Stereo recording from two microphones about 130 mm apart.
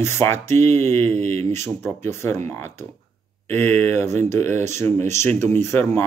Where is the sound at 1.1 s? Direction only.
55° right (ahead or behind).